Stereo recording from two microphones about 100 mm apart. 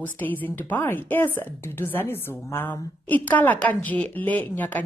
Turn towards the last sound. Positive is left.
turn(degrees=15)  # may be behind; listen again after turning